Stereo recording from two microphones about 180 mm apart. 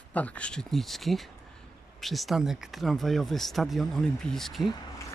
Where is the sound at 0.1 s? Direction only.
10° left (ahead or behind).